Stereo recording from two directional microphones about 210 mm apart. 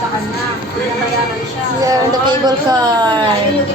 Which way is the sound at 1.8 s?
20° right (ahead or behind).